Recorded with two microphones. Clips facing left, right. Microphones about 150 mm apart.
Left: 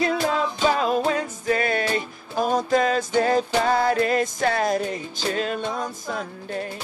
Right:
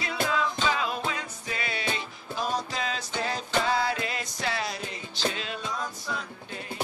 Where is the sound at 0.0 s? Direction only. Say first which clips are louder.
Left 6 dB; 45° left (ahead or behind).